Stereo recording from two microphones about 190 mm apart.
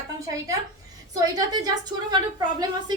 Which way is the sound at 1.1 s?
20° right (ahead or behind).